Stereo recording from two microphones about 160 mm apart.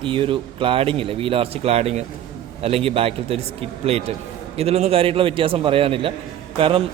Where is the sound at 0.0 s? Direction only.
35° right (ahead or behind).